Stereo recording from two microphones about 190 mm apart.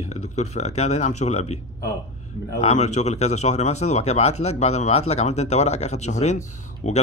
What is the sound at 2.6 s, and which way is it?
Speech, 35° left (ahead or behind).